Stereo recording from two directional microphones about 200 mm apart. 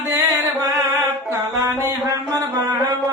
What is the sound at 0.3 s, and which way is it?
Carnatic music, 15° right (ahead or behind).